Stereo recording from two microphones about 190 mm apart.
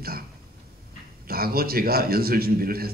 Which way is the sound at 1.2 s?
50° right (ahead or behind).